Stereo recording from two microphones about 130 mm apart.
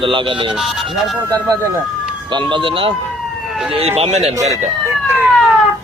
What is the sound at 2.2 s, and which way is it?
Speech, 40° right (ahead or behind).